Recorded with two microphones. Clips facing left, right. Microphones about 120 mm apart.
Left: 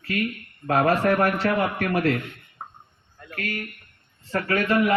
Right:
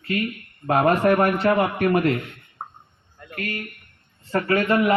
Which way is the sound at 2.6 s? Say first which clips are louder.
Right 3 dB; 30° right (ahead or behind).